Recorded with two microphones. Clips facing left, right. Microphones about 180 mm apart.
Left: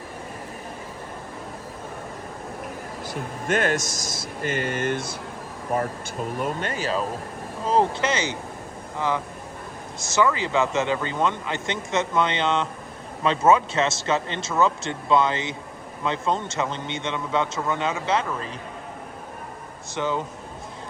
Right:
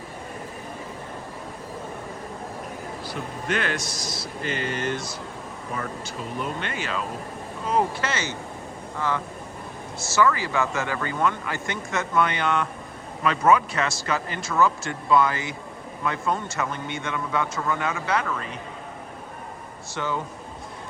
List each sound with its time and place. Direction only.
3.1 s speech: 45° left (ahead or behind)
6.4 s speech: 40° left (ahead or behind)
7.7 s speech: 25° left (ahead or behind)
20.0 s speech: 20° left (ahead or behind)